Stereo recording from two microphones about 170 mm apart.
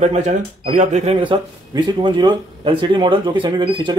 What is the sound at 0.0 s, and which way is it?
Speech, 45° right (ahead or behind).